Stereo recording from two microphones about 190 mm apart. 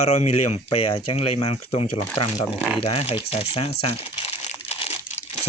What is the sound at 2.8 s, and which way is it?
Speech, 30° left (ahead or behind).